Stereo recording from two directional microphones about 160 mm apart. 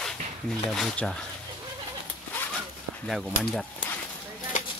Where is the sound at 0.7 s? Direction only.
Centre (ahead or behind).